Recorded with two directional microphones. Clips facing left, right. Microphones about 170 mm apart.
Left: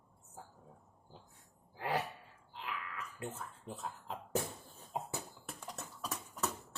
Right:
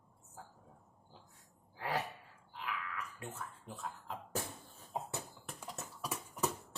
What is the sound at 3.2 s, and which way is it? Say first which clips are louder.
Speech: left 2 dB; 25° left (ahead or behind).